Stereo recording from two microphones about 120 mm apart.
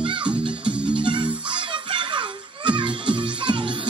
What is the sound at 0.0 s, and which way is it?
Music, 45° right (ahead or behind).